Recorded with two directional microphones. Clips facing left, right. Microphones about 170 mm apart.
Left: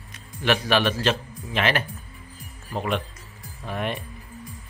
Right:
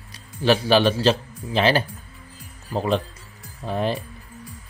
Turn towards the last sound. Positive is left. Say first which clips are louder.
# right 5 dB
turn(degrees=-30)  # may be behind; listen again after turning